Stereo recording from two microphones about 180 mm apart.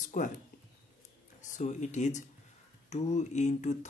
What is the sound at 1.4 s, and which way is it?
Speech, 40° left (ahead or behind).